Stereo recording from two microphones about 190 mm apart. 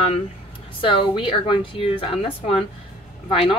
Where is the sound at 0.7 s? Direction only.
25° left (ahead or behind).